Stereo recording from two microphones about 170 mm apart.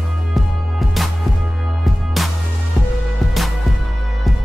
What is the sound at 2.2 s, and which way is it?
Music, centre (ahead or behind).